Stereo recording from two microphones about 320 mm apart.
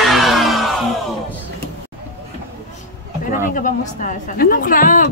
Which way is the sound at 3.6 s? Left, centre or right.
Left.